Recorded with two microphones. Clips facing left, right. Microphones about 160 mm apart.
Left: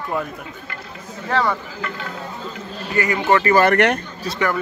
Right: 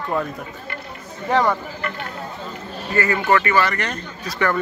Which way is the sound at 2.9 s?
15° left (ahead or behind).